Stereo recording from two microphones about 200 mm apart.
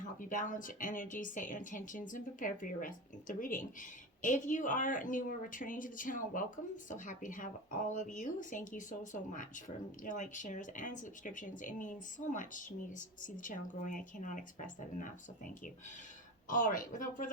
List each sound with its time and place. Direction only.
0.2 s speech: 40° left (ahead or behind)
16.5 s speech: 40° left (ahead or behind)